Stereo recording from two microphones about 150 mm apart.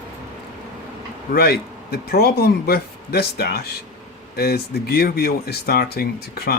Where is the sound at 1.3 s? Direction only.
90° left.